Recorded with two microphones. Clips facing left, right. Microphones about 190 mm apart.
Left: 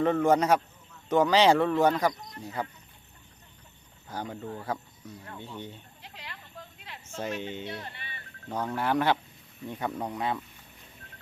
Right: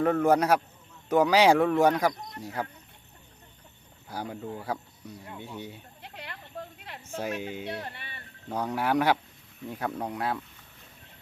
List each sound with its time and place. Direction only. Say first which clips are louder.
0.0 s speech: even; 5° right (ahead or behind)
4.1 s speech: right 1 dB; 10° right (ahead or behind)
6.0 s a sound: right 3 dB; 55° right (ahead or behind)
7.2 s speech: right 1 dB; 10° right (ahead or behind)
7.7 s speech: right 3 dB; 55° right (ahead or behind)
8.4 s speech: right 1 dB; 10° right (ahead or behind)